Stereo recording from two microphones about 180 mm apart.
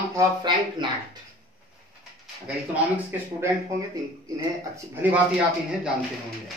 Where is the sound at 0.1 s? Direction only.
25° right (ahead or behind).